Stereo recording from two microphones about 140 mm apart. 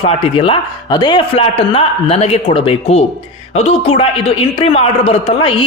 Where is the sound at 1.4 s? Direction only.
40° left (ahead or behind).